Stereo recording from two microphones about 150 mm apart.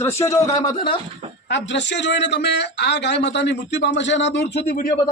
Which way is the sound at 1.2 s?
45° right (ahead or behind).